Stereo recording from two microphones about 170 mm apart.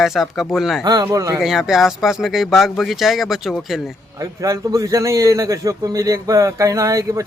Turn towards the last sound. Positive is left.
turn(degrees=-20)  # may be behind; listen again after turning